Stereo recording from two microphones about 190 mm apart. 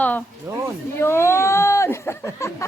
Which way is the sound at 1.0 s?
15° left (ahead or behind).